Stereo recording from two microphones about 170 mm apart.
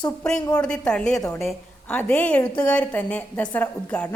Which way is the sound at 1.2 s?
20° left (ahead or behind).